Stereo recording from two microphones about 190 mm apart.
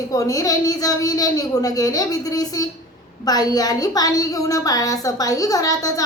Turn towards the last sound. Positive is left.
turn(degrees=20)  # may be behind; listen again after turning